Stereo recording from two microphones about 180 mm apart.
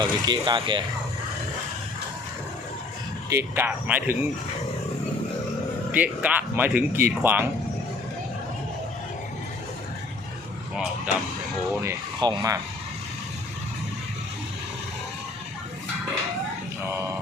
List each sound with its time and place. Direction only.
0.0 s speech: 25° right (ahead or behind)
3.2 s speech: 15° right (ahead or behind)
5.9 s speech: 10° right (ahead or behind)
11.8 s speech: 20° right (ahead or behind)